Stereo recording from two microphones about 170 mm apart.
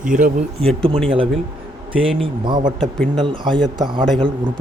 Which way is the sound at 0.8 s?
30° right (ahead or behind).